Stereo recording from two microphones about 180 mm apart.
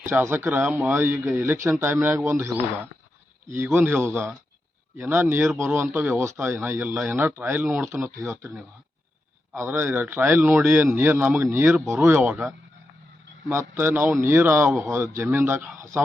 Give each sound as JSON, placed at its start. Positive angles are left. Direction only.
{"t": 0.0, "sound": "speech", "side_deg": -10}